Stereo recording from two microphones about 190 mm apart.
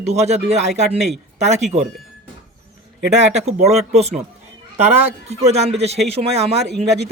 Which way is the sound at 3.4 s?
35° right (ahead or behind).